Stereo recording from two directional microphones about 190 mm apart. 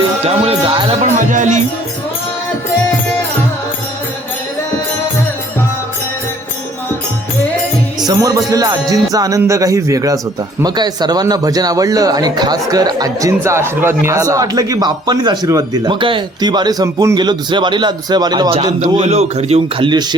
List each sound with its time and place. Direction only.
0.3 s speech: 30° right (ahead or behind)
1.0 s speech: 40° right (ahead or behind)
8.0 s speech: 20° right (ahead or behind)
19.0 s speech: 35° right (ahead or behind)